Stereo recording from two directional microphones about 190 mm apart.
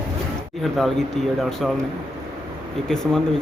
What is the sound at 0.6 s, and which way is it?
Speech, centre (ahead or behind).